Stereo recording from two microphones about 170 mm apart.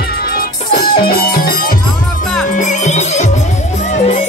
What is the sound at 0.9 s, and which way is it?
Music, 60° left (ahead or behind).